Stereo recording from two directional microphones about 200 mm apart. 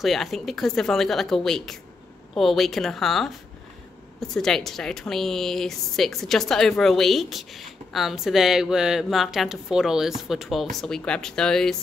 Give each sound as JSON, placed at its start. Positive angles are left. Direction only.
{"t": 0.0, "sound": "a woman's voice", "side_deg": 0}